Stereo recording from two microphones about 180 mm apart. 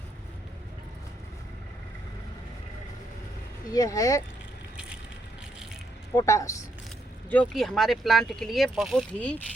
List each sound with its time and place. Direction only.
3.7 s speech: 20° left (ahead or behind)
6.1 s speech: 20° left (ahead or behind)
7.3 s speech: 5° left (ahead or behind)